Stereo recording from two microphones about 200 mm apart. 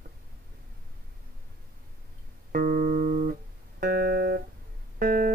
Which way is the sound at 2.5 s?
45° right (ahead or behind).